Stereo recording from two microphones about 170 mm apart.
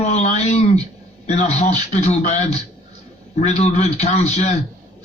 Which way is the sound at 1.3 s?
40° left (ahead or behind).